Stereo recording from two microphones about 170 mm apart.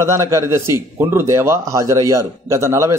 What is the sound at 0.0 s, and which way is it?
A man's voice, 15° right (ahead or behind).